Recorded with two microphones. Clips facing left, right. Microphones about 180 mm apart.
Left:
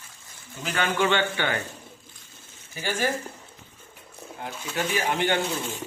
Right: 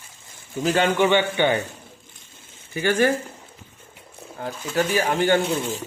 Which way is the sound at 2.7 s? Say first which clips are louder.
Right 8 dB; 60° right (ahead or behind).